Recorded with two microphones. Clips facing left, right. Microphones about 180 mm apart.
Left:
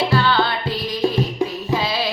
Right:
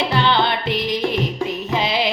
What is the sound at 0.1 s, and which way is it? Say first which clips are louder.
Music: even; 20° right (ahead or behind).